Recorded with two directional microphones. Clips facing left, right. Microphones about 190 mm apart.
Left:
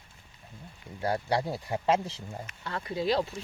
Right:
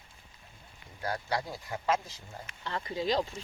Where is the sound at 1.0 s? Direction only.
25° left (ahead or behind).